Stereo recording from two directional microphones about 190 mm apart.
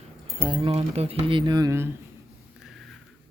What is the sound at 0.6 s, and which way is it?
Speech, 30° right (ahead or behind).